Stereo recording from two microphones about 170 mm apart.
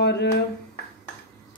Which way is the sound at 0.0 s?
90° left.